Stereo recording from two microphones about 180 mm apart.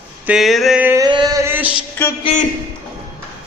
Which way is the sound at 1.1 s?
25° right (ahead or behind).